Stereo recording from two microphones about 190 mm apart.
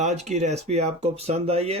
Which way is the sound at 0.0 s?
35° right (ahead or behind).